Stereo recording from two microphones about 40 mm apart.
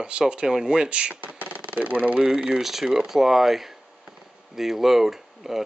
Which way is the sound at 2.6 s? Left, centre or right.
Centre.